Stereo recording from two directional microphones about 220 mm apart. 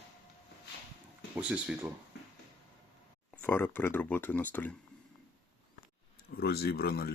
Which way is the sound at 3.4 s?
10° left (ahead or behind).